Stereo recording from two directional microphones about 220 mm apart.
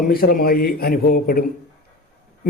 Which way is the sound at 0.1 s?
40° left (ahead or behind).